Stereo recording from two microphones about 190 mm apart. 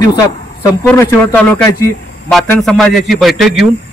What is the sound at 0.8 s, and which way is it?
A man's voice, 10° left (ahead or behind).